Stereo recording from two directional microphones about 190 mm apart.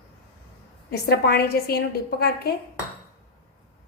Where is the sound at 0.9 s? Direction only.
55° left (ahead or behind).